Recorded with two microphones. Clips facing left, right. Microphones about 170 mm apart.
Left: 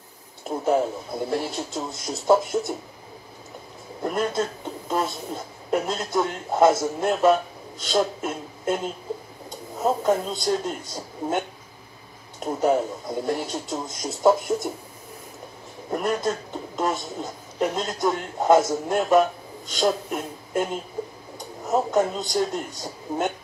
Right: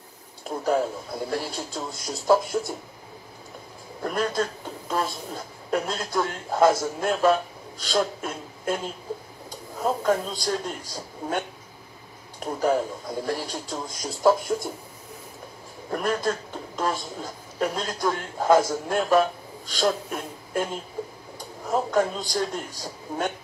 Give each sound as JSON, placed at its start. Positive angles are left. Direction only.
{"t": 0.5, "sound": "speech", "side_deg": 25}
{"t": 4.0, "sound": "speech", "side_deg": 25}
{"t": 10.0, "sound": "speech", "side_deg": 25}
{"t": 12.5, "sound": "speech", "side_deg": 25}
{"t": 15.9, "sound": "a man's voice", "side_deg": 20}